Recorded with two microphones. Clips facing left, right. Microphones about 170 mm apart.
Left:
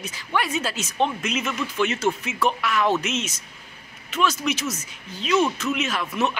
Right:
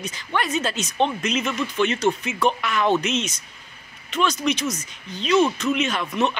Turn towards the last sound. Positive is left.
turn(degrees=5)  # may be behind; listen again after turning